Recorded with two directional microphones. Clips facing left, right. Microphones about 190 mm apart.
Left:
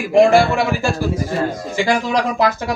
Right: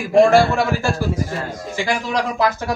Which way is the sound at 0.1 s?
15° left (ahead or behind).